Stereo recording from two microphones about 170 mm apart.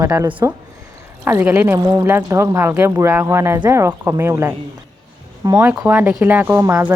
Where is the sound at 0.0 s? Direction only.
20° right (ahead or behind).